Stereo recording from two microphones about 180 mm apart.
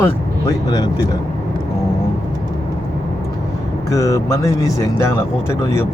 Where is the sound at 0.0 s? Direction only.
20° left (ahead or behind).